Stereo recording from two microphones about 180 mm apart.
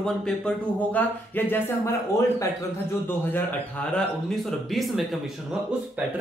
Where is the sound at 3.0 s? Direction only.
10° left (ahead or behind).